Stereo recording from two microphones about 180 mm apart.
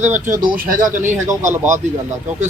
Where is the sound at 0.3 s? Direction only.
50° right (ahead or behind).